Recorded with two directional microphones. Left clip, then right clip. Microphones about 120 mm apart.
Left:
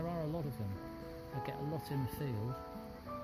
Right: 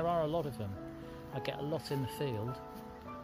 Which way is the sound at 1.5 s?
15° left (ahead or behind).